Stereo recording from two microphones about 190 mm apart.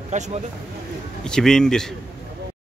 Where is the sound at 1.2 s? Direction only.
5° left (ahead or behind).